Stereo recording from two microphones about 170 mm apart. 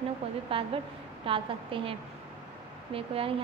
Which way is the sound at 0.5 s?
35° right (ahead or behind).